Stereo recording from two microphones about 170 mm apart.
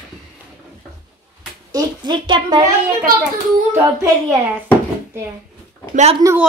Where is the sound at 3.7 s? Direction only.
20° right (ahead or behind).